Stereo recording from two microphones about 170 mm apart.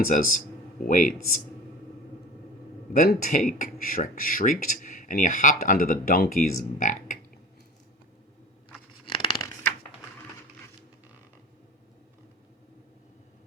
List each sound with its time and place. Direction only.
0.1 s speech: 50° left (ahead or behind)
2.9 s speech: 55° left (ahead or behind)
9.0 s a sound: 30° left (ahead or behind)